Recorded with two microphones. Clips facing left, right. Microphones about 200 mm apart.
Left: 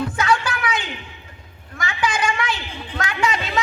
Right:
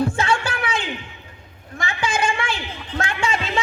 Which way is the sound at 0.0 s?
25° right (ahead or behind).